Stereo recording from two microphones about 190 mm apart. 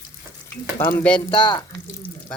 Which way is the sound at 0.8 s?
10° left (ahead or behind).